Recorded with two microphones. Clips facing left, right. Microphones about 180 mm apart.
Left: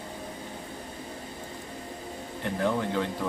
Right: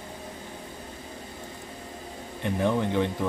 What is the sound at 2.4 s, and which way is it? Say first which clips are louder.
Speech: right 2 dB; 20° right (ahead or behind).